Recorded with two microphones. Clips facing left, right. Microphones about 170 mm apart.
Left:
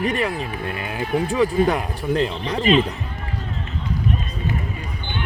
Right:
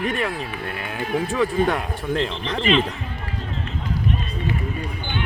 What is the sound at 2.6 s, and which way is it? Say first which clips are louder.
Speech: left 3 dB; 40° left (ahead or behind).